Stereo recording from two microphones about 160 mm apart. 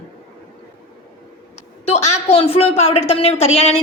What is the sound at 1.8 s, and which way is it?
A woman's voice, 45° left (ahead or behind).